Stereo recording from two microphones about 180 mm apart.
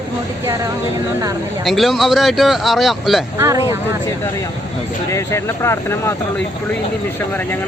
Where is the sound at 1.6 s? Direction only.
Centre (ahead or behind).